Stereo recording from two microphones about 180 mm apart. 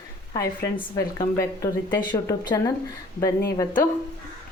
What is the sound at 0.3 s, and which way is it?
A woman's voice, 20° left (ahead or behind).